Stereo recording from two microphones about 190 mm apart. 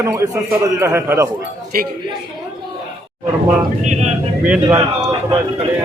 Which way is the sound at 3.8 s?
40° right (ahead or behind).